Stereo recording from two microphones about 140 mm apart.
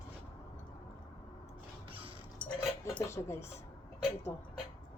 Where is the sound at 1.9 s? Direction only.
40° right (ahead or behind).